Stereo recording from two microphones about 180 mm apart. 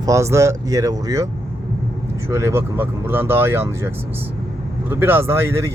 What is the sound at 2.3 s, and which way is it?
Speech, 15° right (ahead or behind).